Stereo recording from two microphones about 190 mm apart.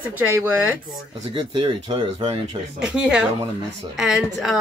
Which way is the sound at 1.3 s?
25° right (ahead or behind).